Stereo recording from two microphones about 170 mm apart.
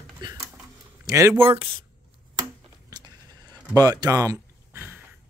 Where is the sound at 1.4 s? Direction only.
30° right (ahead or behind).